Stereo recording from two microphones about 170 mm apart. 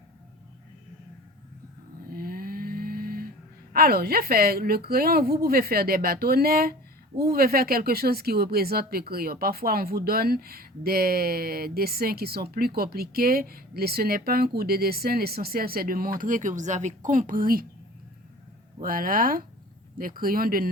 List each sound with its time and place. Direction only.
2.0 s snoring: 60° right (ahead or behind)
3.7 s speech: 65° right (ahead or behind)
18.8 s speech: 55° right (ahead or behind)